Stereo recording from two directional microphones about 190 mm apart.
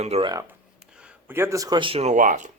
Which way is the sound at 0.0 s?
35° right (ahead or behind).